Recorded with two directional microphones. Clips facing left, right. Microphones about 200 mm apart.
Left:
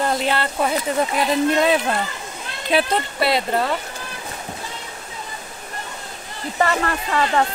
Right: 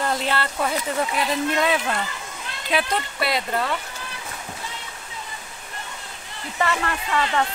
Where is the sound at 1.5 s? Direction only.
35° left (ahead or behind).